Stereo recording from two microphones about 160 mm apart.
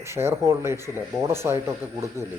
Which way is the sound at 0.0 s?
15° right (ahead or behind).